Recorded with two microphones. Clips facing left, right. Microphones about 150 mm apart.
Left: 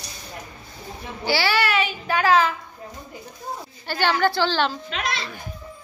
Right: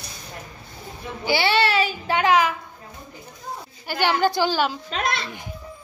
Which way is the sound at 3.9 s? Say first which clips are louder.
Even; 15° right (ahead or behind).